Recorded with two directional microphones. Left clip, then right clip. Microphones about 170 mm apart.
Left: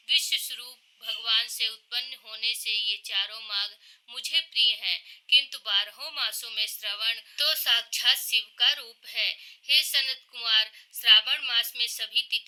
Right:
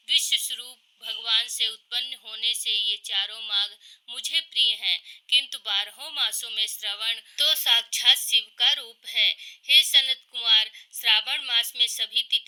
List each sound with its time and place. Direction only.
0.1 s a woman's voice: 15° right (ahead or behind)